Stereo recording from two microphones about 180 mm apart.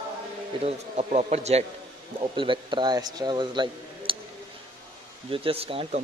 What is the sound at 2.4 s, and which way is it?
Speech, 25° right (ahead or behind).